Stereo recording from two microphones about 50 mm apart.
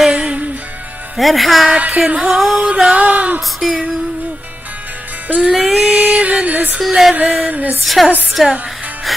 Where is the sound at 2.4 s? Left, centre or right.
Centre; by 3.4 s right.